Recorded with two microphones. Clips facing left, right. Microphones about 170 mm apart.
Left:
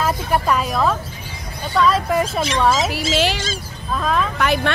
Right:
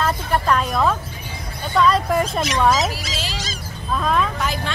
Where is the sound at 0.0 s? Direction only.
5° left (ahead or behind).